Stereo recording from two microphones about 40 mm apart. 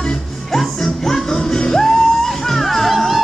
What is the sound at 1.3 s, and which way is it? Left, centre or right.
Music, centre.